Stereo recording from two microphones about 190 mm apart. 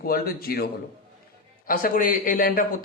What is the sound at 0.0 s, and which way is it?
Speech, 50° left (ahead or behind).